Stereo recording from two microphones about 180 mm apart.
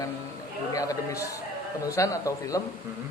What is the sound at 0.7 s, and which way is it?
Speech, 20° left (ahead or behind).